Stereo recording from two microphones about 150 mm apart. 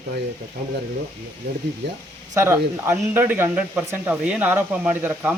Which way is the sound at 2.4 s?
15° right (ahead or behind).